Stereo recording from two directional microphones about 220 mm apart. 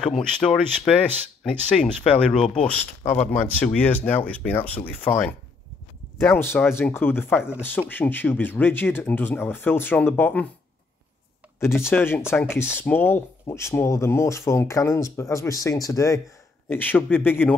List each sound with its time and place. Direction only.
0.0 s speech: centre (ahead or behind)
11.6 s speech: 10° left (ahead or behind)